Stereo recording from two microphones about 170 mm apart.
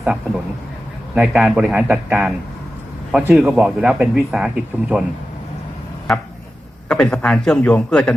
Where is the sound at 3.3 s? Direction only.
Centre (ahead or behind).